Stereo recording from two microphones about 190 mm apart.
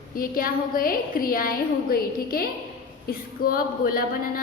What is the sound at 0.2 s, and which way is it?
A woman's voice, 50° left (ahead or behind).